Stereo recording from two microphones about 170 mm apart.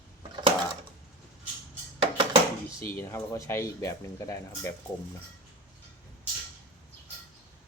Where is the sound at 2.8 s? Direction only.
15° left (ahead or behind).